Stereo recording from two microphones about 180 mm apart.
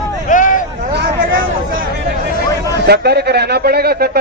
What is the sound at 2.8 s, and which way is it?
Speech, 65° right (ahead or behind).